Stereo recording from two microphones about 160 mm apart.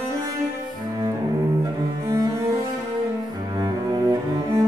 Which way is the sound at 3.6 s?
25° right (ahead or behind).